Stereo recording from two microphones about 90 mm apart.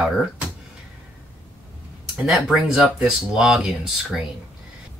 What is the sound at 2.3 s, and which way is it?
Speech, 5° right (ahead or behind).